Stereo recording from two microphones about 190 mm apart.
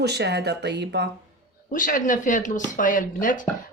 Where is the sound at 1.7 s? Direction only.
45° left (ahead or behind).